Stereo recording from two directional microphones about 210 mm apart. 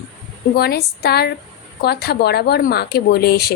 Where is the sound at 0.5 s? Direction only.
50° left (ahead or behind).